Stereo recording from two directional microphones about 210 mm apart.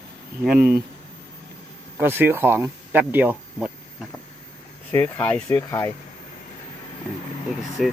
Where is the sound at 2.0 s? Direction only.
10° right (ahead or behind).